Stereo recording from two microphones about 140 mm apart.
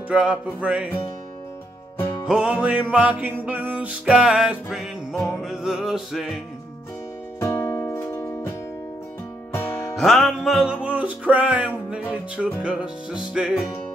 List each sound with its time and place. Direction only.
0.1 s music: 10° right (ahead or behind)
2.2 s music: 5° right (ahead or behind)
7.3 s music: 20° left (ahead or behind)
9.5 s music: 20° left (ahead or behind)
9.9 s music: centre (ahead or behind)